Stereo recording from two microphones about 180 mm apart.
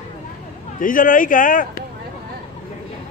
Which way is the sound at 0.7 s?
50° left (ahead or behind).